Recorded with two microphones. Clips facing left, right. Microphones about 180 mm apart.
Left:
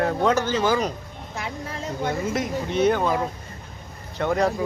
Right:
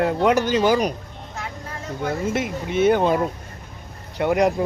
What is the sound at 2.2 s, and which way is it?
Speech, 5° right (ahead or behind).